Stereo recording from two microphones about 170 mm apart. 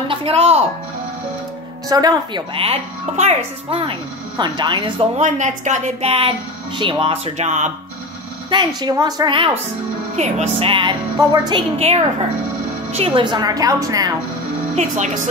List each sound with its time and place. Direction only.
0.1 s speech: 35° right (ahead or behind)
1.9 s speech: 20° right (ahead or behind)
4.4 s speech: 25° right (ahead or behind)
5.1 s speech: 45° right (ahead or behind)
8.5 s speech: 25° right (ahead or behind)
10.1 s speech: 40° right (ahead or behind); by 11.6 s 25° right (ahead or behind)
12.9 s speech: 35° right (ahead or behind)